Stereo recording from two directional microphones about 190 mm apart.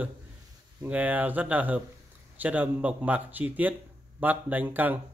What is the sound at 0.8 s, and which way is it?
Speech, 10° right (ahead or behind).